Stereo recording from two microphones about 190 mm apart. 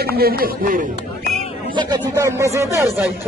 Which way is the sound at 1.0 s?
35° left (ahead or behind).